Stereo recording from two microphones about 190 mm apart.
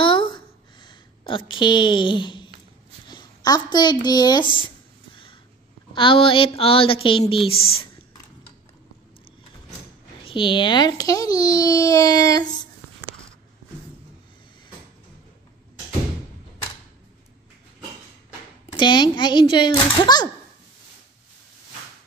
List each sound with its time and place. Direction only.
0.0 s a sound: 25° left (ahead or behind)
1.5 s a child's voice: 25° left (ahead or behind)
5.1 s a sound: 25° left (ahead or behind)
5.9 s a child's voice: 25° left (ahead or behind)
10.2 s a child's voice: 25° left (ahead or behind)
18.8 s a child's voice: 25° left (ahead or behind)